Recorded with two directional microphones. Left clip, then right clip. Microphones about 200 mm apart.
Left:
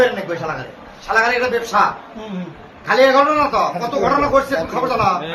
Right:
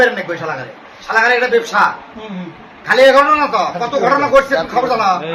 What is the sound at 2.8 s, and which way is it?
A man's voice, centre (ahead or behind).